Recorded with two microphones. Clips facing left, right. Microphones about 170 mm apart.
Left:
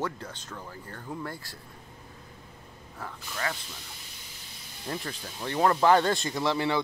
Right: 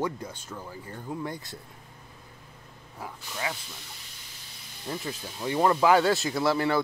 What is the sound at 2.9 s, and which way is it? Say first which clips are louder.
Speech: even; 15° right (ahead or behind).